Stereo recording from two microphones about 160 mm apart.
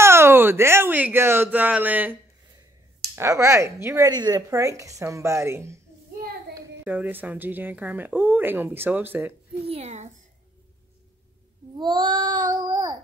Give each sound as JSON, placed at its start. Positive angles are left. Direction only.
{"t": 0.0, "sound": "speech", "side_deg": -15}
{"t": 3.2, "sound": "a woman's voice", "side_deg": -20}
{"t": 9.7, "sound": "a child's voice", "side_deg": -40}
{"t": 11.7, "sound": "a woman's voice", "side_deg": -30}